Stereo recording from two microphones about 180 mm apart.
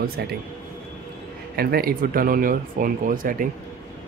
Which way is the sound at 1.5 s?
55° right (ahead or behind).